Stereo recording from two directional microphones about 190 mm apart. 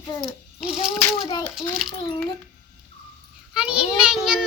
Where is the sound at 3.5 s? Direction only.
5° right (ahead or behind).